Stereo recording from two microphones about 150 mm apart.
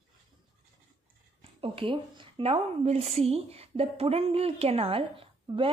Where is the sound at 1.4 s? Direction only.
40° right (ahead or behind).